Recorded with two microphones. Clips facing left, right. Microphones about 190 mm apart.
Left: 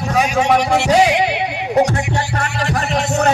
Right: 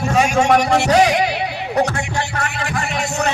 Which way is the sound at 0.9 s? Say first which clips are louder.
Left 1 dB; 10° left (ahead or behind).